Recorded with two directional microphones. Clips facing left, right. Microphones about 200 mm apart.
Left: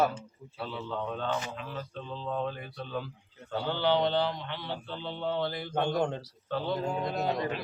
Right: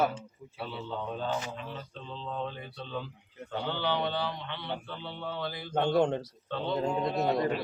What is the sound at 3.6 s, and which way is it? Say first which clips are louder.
Speech: left 4 dB; 15° left (ahead or behind).